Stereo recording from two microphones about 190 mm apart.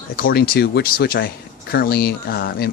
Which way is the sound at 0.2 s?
50° left (ahead or behind).